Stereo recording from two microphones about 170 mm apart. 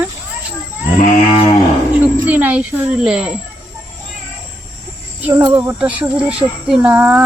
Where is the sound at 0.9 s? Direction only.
35° left (ahead or behind).